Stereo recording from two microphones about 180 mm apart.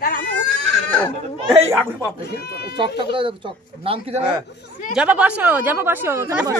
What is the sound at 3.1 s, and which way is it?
Speech, 30° right (ahead or behind).